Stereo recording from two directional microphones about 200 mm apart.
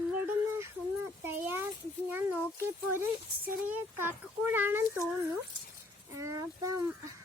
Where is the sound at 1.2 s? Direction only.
10° right (ahead or behind).